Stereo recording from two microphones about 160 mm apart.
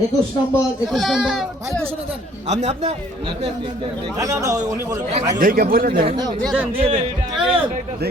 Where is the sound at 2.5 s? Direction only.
45° right (ahead or behind).